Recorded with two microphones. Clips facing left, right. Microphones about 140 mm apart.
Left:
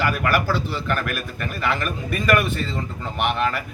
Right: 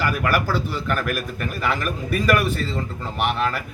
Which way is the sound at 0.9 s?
5° right (ahead or behind).